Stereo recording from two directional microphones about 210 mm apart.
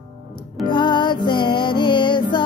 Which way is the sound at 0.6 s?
20° left (ahead or behind).